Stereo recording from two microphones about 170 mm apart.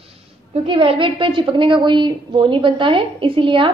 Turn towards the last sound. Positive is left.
turn(degrees=-30)  # may be behind; listen again after turning